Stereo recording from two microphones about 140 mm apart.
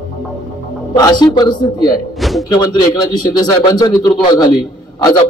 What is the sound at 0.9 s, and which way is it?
Speech, 30° left (ahead or behind).